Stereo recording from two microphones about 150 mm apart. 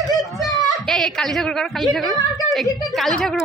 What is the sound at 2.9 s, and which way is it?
Speech, centre (ahead or behind).